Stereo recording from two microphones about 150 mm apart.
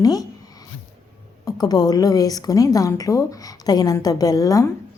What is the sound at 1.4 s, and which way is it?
A woman's voice, 25° left (ahead or behind).